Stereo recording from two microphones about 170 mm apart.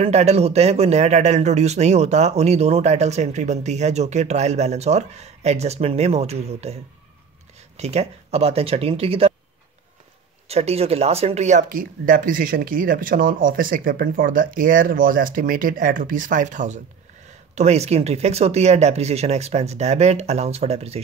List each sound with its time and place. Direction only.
0.0 s speech: 40° right (ahead or behind)
10.5 s speech: 35° right (ahead or behind)